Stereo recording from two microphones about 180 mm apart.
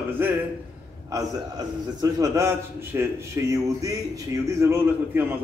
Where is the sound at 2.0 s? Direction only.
20° right (ahead or behind).